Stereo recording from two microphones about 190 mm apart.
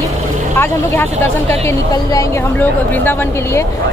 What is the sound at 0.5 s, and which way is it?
Speech, 10° left (ahead or behind).